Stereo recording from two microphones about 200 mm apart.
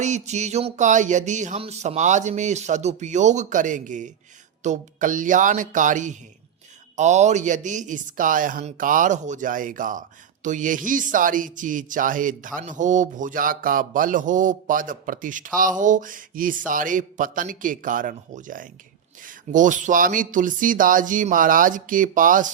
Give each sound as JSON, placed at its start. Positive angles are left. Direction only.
{"t": 0.0, "sound": "speech", "side_deg": -35}